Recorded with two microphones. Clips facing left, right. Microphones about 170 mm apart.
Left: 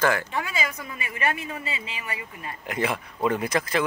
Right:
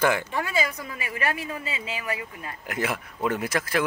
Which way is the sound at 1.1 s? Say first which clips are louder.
Left 1 dB; 25° left (ahead or behind).